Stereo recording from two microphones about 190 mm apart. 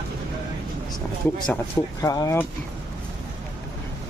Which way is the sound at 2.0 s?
20° left (ahead or behind).